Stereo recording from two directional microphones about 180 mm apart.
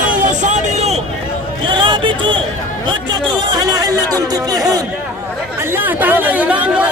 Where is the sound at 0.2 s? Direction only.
40° right (ahead or behind); by 4.6 s 20° right (ahead or behind).